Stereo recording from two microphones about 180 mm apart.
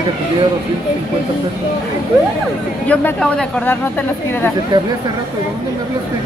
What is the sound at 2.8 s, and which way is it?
A woman's voice, 5° left (ahead or behind).